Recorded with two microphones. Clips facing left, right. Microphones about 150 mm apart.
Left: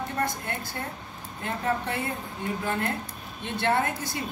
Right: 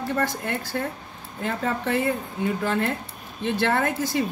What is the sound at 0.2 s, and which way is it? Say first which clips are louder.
A woman's voice: right 3 dB; 90° right.